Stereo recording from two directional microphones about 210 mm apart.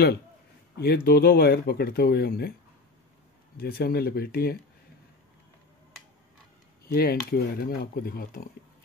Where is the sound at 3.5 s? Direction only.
45° left (ahead or behind).